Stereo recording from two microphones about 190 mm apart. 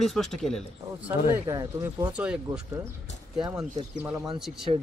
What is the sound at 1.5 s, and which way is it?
Speech, 15° right (ahead or behind).